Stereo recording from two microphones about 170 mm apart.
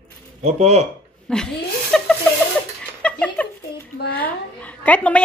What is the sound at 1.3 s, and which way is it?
Chuckle, 5° left (ahead or behind).